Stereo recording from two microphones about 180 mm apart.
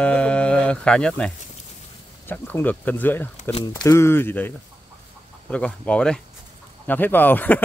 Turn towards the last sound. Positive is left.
turn(degrees=10)  # may be behind; listen again after turning